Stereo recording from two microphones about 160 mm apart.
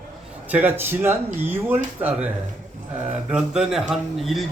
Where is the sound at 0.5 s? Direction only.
10° right (ahead or behind).